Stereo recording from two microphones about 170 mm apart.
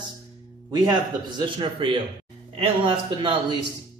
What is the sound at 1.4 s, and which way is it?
A man's voice, 30° right (ahead or behind).